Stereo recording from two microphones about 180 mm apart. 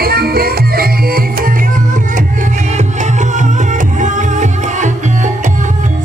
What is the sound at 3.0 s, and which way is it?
Music, 40° right (ahead or behind).